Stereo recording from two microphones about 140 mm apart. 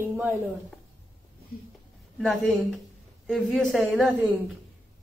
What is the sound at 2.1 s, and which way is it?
Speech, centre (ahead or behind).